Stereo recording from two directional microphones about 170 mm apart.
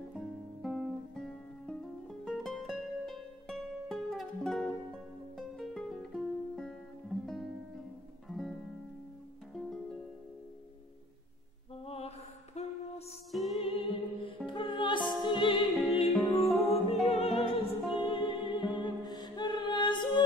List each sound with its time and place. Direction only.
0.1 s music: centre (ahead or behind)
11.8 s mantra: 35° left (ahead or behind)
12.6 s music: 40° left (ahead or behind)
13.3 s music: centre (ahead or behind)
13.7 s music: 30° left (ahead or behind)
16.1 s music: centre (ahead or behind)
16.9 s music: 35° left (ahead or behind)